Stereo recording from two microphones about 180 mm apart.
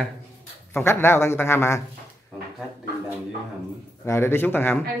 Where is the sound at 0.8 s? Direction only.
15° left (ahead or behind).